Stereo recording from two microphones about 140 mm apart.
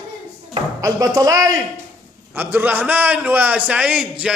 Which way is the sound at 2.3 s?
15° right (ahead or behind).